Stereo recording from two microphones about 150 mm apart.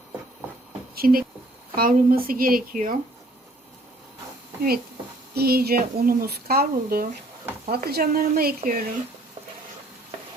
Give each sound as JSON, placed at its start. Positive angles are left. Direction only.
{"t": 0.9, "sound": "speech", "side_deg": -75}
{"t": 5.3, "sound": "speech", "side_deg": -90}